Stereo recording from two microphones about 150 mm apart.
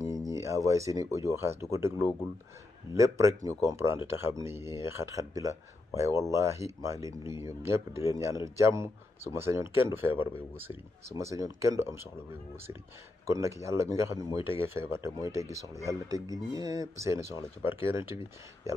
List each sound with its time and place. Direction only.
0.3 s speech: 20° right (ahead or behind)
13.3 s speech: 20° right (ahead or behind)